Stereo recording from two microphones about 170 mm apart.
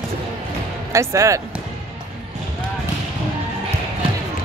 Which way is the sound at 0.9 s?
20° right (ahead or behind).